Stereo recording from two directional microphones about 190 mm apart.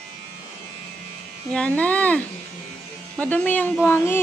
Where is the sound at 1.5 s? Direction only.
5° left (ahead or behind).